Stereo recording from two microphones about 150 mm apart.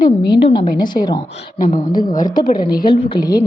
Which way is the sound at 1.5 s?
65° left (ahead or behind).